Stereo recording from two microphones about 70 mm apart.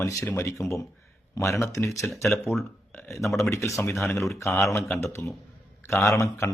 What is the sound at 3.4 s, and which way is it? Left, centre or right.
Speech, left.